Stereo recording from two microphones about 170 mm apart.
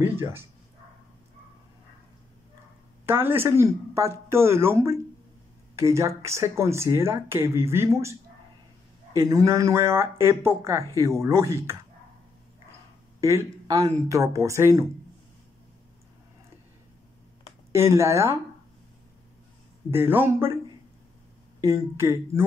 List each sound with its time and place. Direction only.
0.0 s speech: 15° right (ahead or behind)
3.1 s speech: 15° right (ahead or behind)
13.2 s speech: 15° right (ahead or behind)
17.7 s speech: 15° right (ahead or behind)
19.9 s speech: 15° right (ahead or behind)
21.5 s speech: 15° right (ahead or behind)